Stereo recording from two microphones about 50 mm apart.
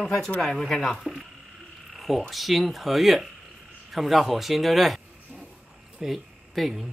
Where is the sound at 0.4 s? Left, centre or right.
Centre.